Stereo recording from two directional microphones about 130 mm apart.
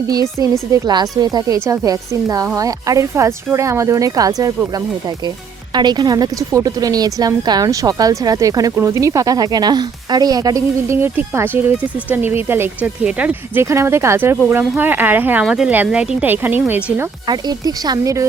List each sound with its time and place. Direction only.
0.1 s a woman's voice: 25° right (ahead or behind)
5.7 s a woman's voice: 35° right (ahead or behind); by 13.7 s 10° right (ahead or behind)
13.7 s speech: 20° right (ahead or behind)
15.4 s speech: 5° right (ahead or behind)
17.2 s a woman's voice: 30° right (ahead or behind)